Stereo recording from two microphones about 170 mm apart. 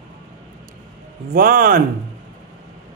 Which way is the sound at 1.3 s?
55° right (ahead or behind).